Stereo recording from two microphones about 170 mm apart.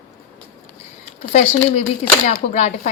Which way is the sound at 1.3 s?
40° left (ahead or behind).